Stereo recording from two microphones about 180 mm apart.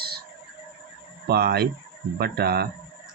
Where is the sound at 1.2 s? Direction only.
60° right (ahead or behind).